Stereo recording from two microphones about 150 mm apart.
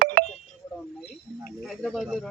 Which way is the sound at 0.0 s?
80° right.